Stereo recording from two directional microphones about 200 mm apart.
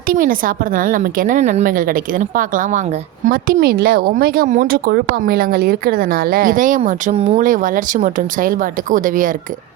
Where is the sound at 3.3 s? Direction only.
50° right (ahead or behind).